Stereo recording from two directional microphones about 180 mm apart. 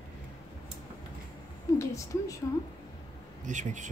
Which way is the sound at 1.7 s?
15° left (ahead or behind).